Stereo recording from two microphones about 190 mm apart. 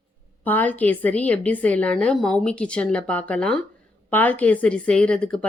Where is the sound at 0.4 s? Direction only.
10° left (ahead or behind).